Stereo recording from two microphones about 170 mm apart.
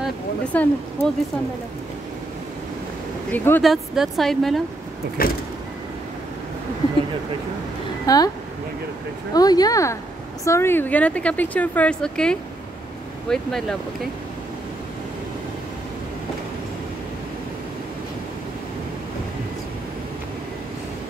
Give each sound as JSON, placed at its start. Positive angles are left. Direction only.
{"t": 0.5, "sound": "speech", "side_deg": 10}
{"t": 3.3, "sound": "speech", "side_deg": 10}
{"t": 3.6, "sound": "a woman's voice", "side_deg": 0}
{"t": 5.2, "sound": "vehicle", "side_deg": 60}
{"t": 8.1, "sound": "speech", "side_deg": 20}
{"t": 9.3, "sound": "a woman's voice", "side_deg": 20}